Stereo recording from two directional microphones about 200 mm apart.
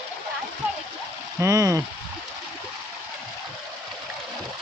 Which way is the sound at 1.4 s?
15° right (ahead or behind).